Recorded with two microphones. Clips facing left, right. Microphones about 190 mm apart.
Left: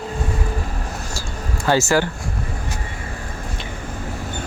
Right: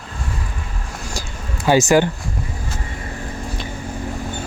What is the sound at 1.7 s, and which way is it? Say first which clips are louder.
Speech: right 4 dB; 15° right (ahead or behind).